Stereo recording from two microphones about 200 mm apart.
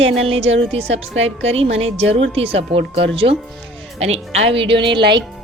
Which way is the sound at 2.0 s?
30° right (ahead or behind).